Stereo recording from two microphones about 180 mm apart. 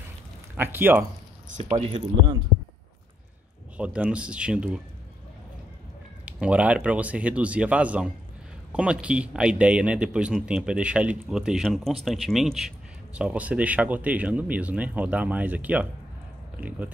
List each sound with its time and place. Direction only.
0.6 s a man's voice: 10° right (ahead or behind)
1.6 s speech: 35° right (ahead or behind)
3.7 s a man's voice: 5° right (ahead or behind)
6.2 s a man's voice: 5° right (ahead or behind)